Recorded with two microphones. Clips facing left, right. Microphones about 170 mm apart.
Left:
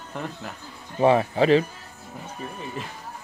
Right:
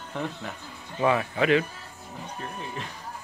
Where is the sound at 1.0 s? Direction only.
30° left (ahead or behind).